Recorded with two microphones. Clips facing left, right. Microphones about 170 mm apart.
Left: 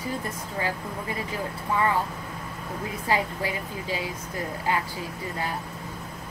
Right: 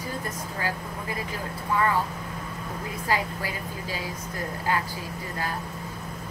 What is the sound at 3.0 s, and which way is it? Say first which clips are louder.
Speech: left 2 dB; 20° left (ahead or behind).